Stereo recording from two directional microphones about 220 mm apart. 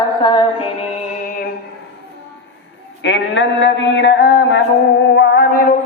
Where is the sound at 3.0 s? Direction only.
55° left (ahead or behind).